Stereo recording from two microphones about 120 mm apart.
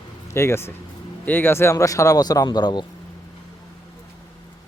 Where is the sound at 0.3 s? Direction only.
20° left (ahead or behind); by 2.8 s 35° left (ahead or behind).